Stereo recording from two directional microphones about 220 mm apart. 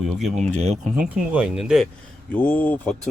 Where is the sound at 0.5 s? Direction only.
30° right (ahead or behind).